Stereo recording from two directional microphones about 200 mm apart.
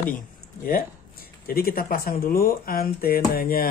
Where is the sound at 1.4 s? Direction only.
50° left (ahead or behind).